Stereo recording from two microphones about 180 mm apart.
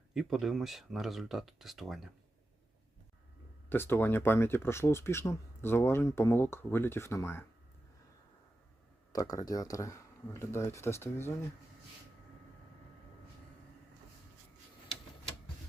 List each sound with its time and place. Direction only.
0.1 s speech: centre (ahead or behind)
3.7 s speech: 10° left (ahead or behind)
9.1 s speech: 20° left (ahead or behind)